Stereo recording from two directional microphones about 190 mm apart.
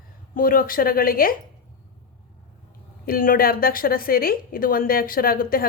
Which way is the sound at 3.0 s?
50° left (ahead or behind).